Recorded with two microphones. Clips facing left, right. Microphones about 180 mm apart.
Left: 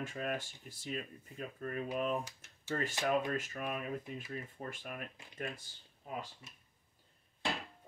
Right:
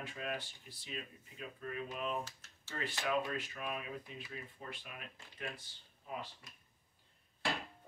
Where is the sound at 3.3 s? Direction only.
45° left (ahead or behind).